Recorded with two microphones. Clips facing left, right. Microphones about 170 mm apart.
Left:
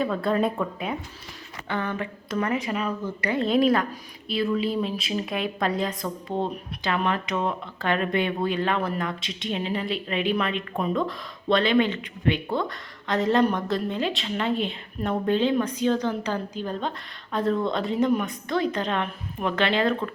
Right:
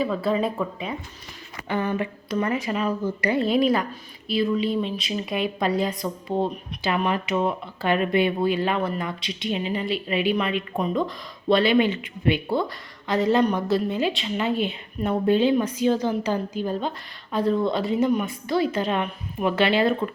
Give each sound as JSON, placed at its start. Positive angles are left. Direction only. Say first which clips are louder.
{"t": 0.0, "sound": "a woman's voice", "louder": "even", "side_deg": -5}
{"t": 1.6, "sound": "speech", "louder": "right 4 dB", "side_deg": -15}
{"t": 2.3, "sound": "a woman's voice", "louder": "right 1 dB", "side_deg": 0}